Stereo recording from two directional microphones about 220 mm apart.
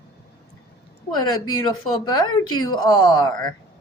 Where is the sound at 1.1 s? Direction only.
20° left (ahead or behind).